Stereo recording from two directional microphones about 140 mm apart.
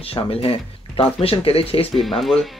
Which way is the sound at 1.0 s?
40° left (ahead or behind).